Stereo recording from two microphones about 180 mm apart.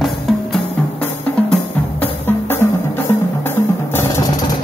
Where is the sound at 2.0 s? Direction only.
10° left (ahead or behind).